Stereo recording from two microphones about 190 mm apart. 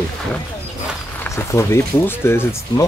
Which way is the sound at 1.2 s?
15° left (ahead or behind).